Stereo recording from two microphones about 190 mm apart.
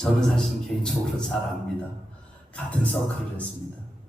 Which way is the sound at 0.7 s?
5° left (ahead or behind).